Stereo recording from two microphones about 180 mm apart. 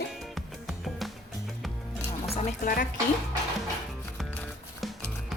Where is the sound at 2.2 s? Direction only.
35° left (ahead or behind).